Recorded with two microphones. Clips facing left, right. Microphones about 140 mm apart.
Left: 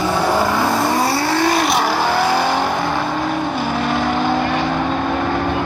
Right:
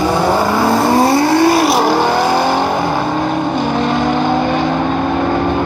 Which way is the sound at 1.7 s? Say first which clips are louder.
Right 5 dB; 30° right (ahead or behind).